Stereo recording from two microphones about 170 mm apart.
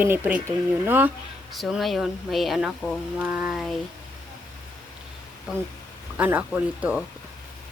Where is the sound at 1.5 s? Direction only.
Centre (ahead or behind).